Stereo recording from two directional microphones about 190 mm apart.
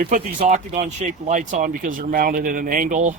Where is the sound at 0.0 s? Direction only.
40° right (ahead or behind).